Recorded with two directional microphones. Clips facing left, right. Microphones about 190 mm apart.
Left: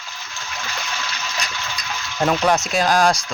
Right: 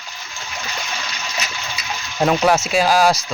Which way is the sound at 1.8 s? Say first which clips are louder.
Right 3 dB; 10° right (ahead or behind).